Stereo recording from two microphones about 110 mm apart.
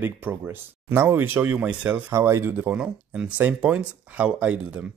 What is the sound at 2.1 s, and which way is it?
Speech, 25° right (ahead or behind).